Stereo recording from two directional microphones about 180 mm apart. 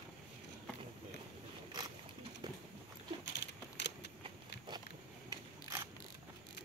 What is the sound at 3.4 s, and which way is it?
Keys jangling, 75° left (ahead or behind).